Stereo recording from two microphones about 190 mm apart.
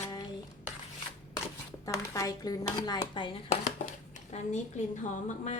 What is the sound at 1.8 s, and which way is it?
A woman's voice, 20° left (ahead or behind).